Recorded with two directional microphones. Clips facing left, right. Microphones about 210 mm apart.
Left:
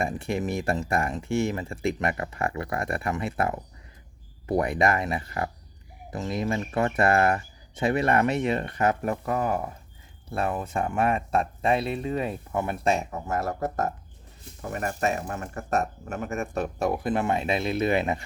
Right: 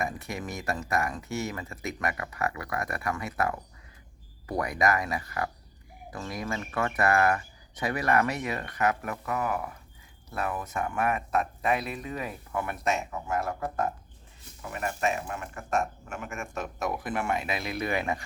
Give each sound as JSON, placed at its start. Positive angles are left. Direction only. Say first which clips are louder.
{"t": 0.0, "sound": "speech", "louder": "left 6 dB", "side_deg": 30}